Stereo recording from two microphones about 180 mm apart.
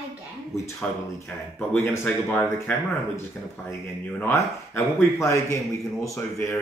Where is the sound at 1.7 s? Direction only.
15° left (ahead or behind).